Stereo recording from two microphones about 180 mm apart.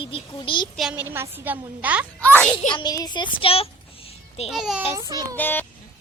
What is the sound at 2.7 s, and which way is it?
Speech, 20° left (ahead or behind).